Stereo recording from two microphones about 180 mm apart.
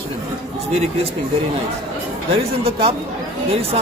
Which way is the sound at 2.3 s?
30° right (ahead or behind).